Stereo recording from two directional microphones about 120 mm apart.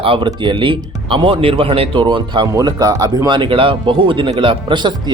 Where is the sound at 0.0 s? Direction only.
45° right (ahead or behind).